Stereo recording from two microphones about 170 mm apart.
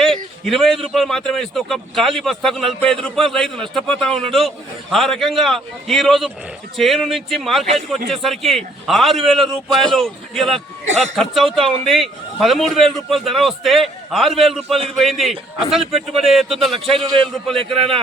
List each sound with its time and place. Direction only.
0.0 s a man's voice: centre (ahead or behind)
16.9 s a man's voice: 30° right (ahead or behind)
17.7 s a man's voice: centre (ahead or behind)